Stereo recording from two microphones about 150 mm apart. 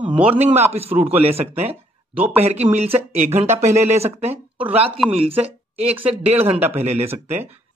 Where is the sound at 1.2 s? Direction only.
45° right (ahead or behind).